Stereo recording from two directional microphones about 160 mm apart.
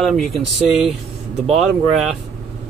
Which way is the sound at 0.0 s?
Centre (ahead or behind).